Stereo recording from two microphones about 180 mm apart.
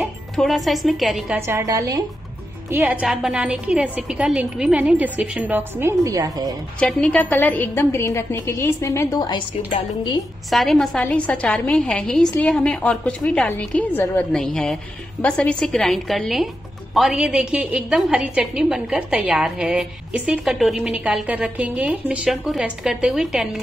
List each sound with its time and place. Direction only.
0.4 s a woman's voice: centre (ahead or behind)
1.4 s a woman's voice: 15° right (ahead or behind)
6.8 s a woman's voice: 5° left (ahead or behind)
9.7 s a woman's voice: 30° left (ahead or behind)
10.5 s a woman's voice: centre (ahead or behind)